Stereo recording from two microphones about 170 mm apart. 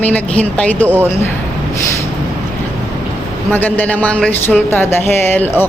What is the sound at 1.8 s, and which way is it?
Vehicle, 15° left (ahead or behind).